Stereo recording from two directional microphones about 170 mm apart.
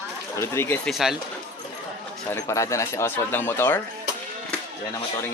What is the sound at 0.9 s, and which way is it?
Speech, centre (ahead or behind).